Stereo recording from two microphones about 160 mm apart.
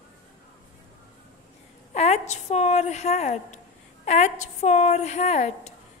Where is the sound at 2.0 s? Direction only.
45° left (ahead or behind).